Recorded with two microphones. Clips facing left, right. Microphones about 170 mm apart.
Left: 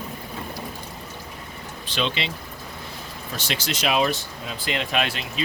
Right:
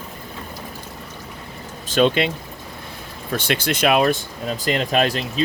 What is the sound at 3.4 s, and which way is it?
Speech, 55° right (ahead or behind).